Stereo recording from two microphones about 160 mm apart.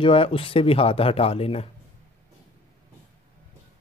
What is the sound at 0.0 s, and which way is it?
Speech, 35° left (ahead or behind).